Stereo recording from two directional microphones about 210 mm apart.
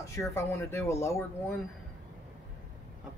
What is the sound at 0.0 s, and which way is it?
Speech, 15° left (ahead or behind).